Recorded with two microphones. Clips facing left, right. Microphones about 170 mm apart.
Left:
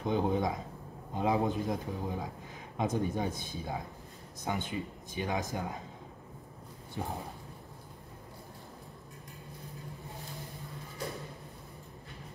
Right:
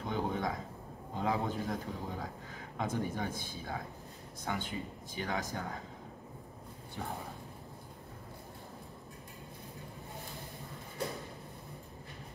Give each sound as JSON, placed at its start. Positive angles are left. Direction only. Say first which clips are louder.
{"t": 0.0, "sound": "a sound", "louder": "left 5 dB", "side_deg": 20}
{"t": 1.1, "sound": "speech", "louder": "left 4 dB", "side_deg": 20}
{"t": 7.0, "sound": "speech", "louder": "left 3 dB", "side_deg": 20}